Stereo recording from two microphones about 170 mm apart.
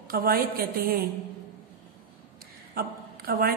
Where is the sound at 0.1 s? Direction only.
60° right (ahead or behind).